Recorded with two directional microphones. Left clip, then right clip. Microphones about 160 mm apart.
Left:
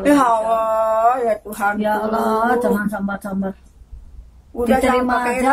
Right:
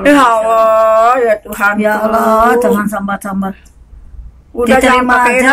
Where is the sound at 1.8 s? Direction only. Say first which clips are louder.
Right 8 dB; 15° left (ahead or behind).